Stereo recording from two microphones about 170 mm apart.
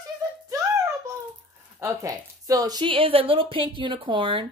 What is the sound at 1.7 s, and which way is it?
A woman's voice, 20° right (ahead or behind).